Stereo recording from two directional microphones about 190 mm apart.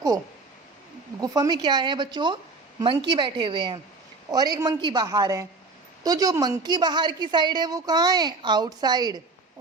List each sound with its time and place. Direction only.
1.2 s a woman's voice: 20° right (ahead or behind)